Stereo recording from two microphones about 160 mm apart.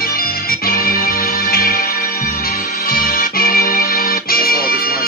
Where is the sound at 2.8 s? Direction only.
65° left (ahead or behind).